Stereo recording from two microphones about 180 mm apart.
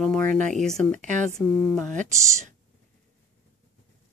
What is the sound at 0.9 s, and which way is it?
Speech, 45° right (ahead or behind).